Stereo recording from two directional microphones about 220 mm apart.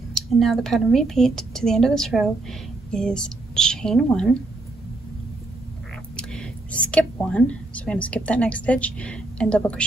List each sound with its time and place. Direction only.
0.1 s speech: centre (ahead or behind)
6.1 s speech: 5° left (ahead or behind)